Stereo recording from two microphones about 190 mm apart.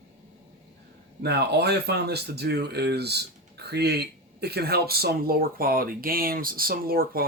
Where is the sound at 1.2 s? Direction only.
60° right (ahead or behind).